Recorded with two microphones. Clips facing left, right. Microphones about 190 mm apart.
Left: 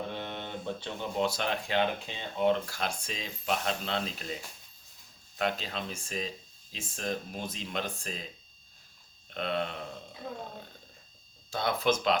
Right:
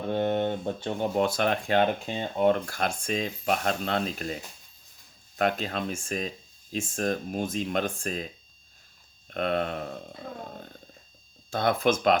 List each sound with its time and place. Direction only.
0.1 s speech: 50° right (ahead or behind)
5.4 s speech: 50° right (ahead or behind)
9.3 s speech: 50° right (ahead or behind)
11.5 s speech: 50° right (ahead or behind)